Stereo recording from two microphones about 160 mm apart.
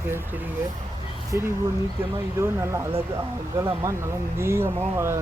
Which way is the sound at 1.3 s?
15° right (ahead or behind).